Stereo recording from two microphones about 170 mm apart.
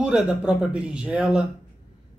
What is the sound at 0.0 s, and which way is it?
Speech, 5° right (ahead or behind).